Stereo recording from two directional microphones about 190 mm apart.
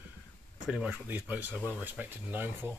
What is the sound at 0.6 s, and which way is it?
Speech, 5° right (ahead or behind).